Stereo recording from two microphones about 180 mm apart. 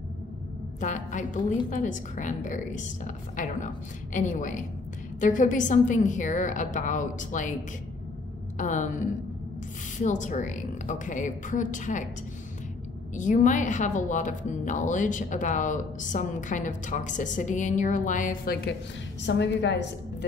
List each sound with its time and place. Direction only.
0.7 s speech: 45° left (ahead or behind)
8.5 s speech: 45° left (ahead or behind)
13.1 s speech: 45° left (ahead or behind)
19.2 s a woman's voice: 75° left (ahead or behind)